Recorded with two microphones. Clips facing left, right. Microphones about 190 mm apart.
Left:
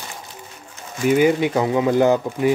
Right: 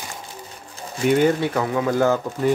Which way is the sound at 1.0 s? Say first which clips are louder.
Left 2 dB; 10° left (ahead or behind).